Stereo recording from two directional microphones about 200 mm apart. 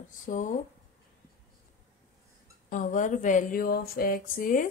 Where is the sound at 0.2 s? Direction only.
40° left (ahead or behind).